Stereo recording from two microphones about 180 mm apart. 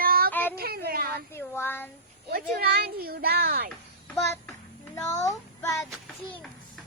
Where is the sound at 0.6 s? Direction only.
60° right (ahead or behind).